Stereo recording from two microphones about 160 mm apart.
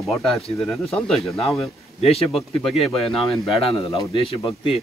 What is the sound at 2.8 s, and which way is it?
Speech, centre (ahead or behind).